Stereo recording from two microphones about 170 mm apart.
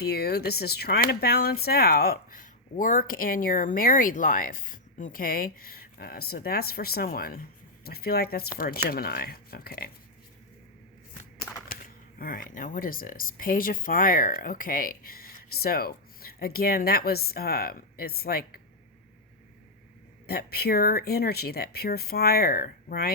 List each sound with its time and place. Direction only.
0.0 s speech: 70° left (ahead or behind)
11.7 s speech: 55° left (ahead or behind)
20.2 s speech: 65° left (ahead or behind)